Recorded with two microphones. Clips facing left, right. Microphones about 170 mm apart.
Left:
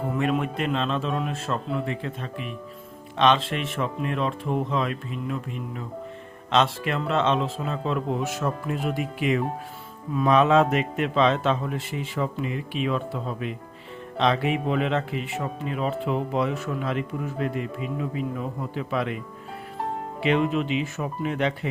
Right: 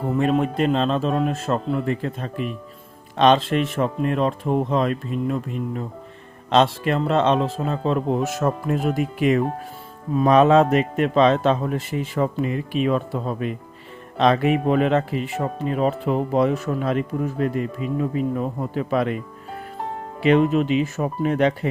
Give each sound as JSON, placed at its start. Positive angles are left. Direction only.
{"t": 0.2, "sound": "speech", "side_deg": -35}
{"t": 20.2, "sound": "speech", "side_deg": -45}